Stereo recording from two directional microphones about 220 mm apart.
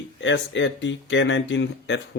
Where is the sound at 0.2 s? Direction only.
55° left (ahead or behind).